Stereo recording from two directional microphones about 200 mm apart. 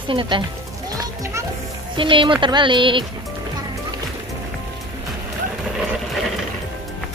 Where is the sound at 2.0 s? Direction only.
25° right (ahead or behind).